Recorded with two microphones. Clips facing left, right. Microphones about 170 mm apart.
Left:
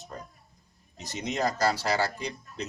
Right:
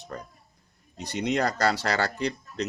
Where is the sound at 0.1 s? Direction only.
70° right (ahead or behind).